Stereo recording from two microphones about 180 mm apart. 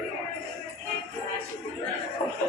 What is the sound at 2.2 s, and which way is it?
Speech, 25° left (ahead or behind).